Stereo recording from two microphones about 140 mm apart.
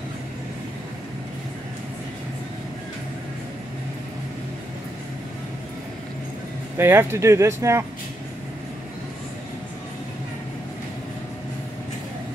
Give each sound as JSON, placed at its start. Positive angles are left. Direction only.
{"t": 6.8, "sound": "speech", "side_deg": -15}